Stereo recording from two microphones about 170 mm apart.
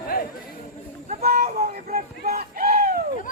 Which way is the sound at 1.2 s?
65° right (ahead or behind).